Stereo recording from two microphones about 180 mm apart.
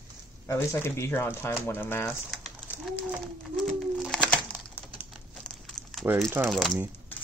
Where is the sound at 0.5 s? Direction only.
15° left (ahead or behind).